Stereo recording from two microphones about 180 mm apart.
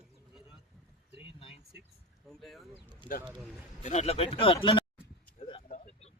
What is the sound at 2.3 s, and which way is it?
Speech, centre (ahead or behind).